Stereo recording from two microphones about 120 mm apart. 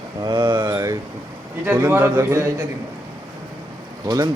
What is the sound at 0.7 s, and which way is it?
A man's voice, 25° right (ahead or behind).